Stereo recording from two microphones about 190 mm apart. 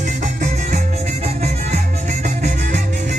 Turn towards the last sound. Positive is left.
turn(degrees=-40)  # may be behind; listen again after turning